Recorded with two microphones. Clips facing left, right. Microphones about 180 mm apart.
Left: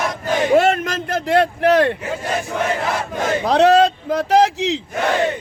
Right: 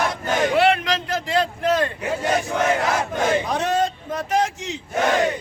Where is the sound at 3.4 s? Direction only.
70° left (ahead or behind).